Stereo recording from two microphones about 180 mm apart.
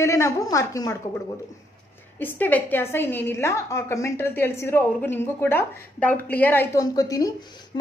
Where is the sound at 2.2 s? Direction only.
10° left (ahead or behind).